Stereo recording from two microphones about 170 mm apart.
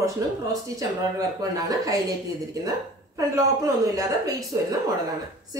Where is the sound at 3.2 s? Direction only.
20° right (ahead or behind).